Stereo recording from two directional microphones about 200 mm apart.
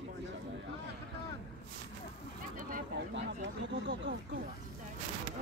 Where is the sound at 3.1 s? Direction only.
65° right (ahead or behind).